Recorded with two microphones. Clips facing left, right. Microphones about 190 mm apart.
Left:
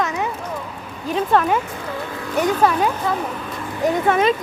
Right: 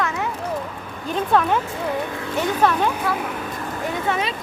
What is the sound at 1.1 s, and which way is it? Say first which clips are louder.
A woman's voice: left 1 dB; centre (ahead or behind).